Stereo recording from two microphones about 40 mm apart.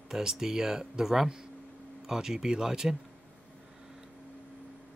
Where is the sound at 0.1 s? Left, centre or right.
Centre.